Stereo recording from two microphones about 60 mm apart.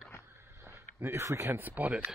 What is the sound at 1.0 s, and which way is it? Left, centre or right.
Speech, right.